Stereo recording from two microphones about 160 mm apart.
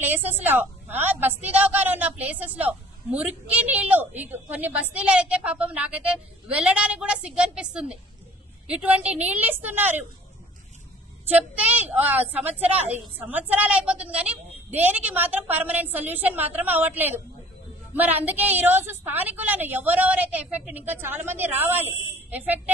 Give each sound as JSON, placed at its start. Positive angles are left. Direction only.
{"t": 0.0, "sound": "a woman's voice", "side_deg": -10}
{"t": 11.2, "sound": "a woman's voice", "side_deg": -10}